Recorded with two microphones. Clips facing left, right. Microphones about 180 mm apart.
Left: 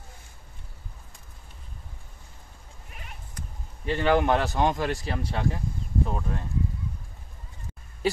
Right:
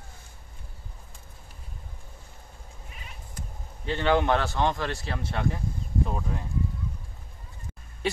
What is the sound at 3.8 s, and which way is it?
Speech, 10° left (ahead or behind).